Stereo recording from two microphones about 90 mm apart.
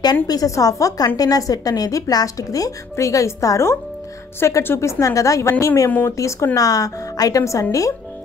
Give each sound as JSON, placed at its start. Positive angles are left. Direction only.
{"t": 0.0, "sound": "a woman's voice", "side_deg": 45}
{"t": 5.9, "sound": "speech", "side_deg": 20}
{"t": 6.1, "sound": "a woman's voice", "side_deg": 35}